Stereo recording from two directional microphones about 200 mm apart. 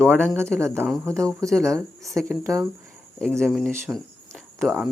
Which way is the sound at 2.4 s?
15° right (ahead or behind).